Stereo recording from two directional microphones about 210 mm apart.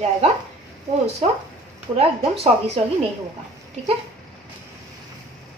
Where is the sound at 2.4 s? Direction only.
30° right (ahead or behind).